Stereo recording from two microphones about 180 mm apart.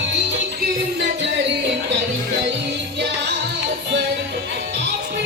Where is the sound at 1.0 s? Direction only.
75° right (ahead or behind).